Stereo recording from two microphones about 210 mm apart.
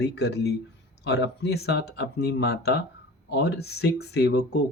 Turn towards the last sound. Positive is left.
turn(degrees=50)  # may be behind; listen again after turning